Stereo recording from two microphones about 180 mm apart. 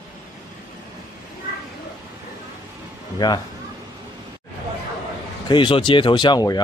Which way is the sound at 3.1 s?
20° left (ahead or behind).